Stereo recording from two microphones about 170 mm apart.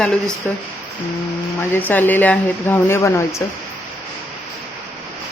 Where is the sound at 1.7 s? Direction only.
10° left (ahead or behind).